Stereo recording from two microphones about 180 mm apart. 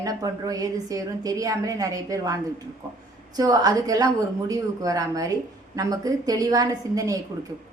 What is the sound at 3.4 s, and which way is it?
A woman's voice, 20° right (ahead or behind).